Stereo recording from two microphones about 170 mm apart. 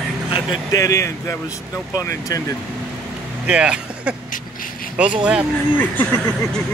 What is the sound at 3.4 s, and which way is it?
Speech, 5° right (ahead or behind).